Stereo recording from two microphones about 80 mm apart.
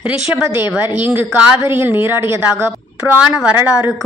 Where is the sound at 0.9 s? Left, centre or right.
Right.